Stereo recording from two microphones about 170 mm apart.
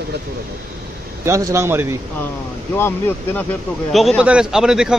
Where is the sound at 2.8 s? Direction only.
15° left (ahead or behind).